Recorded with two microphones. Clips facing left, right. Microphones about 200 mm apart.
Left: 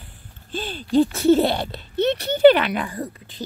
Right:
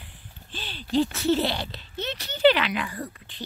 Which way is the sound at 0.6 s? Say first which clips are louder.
Left 6 dB; 45° left (ahead or behind).